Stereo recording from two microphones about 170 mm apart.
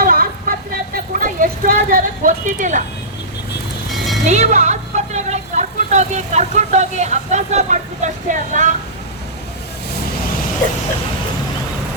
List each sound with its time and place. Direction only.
0.0 s vehicle: 60° right (ahead or behind)
0.9 s a sound: 55° right (ahead or behind)
3.9 s music: centre (ahead or behind)
4.3 s speech: 45° right (ahead or behind)